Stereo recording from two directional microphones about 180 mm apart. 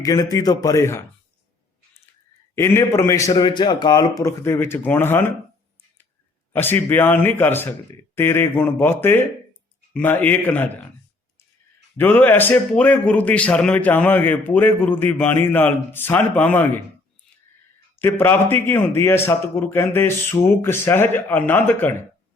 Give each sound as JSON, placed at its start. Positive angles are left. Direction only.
{"t": 0.0, "sound": "a man's voice", "side_deg": 20}
{"t": 2.6, "sound": "speech", "side_deg": 15}
{"t": 6.5, "sound": "speech", "side_deg": 10}
{"t": 11.9, "sound": "speech", "side_deg": 10}
{"t": 18.0, "sound": "speech", "side_deg": 10}